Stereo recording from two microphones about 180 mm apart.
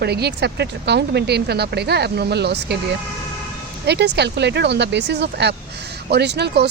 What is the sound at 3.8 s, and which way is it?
A woman's voice, 70° right (ahead or behind).